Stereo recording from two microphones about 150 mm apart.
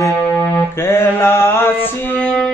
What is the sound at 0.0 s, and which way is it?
Music, 20° left (ahead or behind).